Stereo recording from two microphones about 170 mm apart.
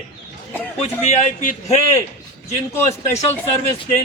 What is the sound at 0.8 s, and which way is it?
A man's voice, 45° left (ahead or behind).